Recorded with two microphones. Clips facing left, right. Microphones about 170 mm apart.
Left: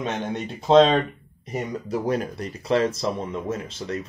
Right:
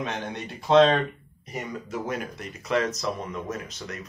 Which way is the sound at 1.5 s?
35° left (ahead or behind).